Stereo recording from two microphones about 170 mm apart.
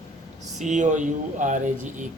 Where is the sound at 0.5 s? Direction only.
45° right (ahead or behind).